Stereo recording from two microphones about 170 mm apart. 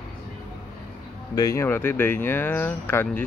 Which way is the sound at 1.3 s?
20° left (ahead or behind).